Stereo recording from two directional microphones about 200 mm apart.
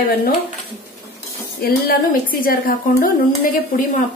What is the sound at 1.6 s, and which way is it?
A woman's voice, 50° left (ahead or behind).